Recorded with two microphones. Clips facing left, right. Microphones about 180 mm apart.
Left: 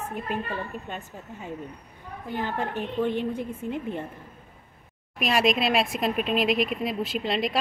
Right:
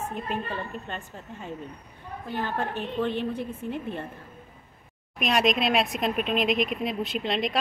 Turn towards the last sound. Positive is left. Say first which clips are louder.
# left 1 dB
turn(degrees=5)  # may be behind; listen again after turning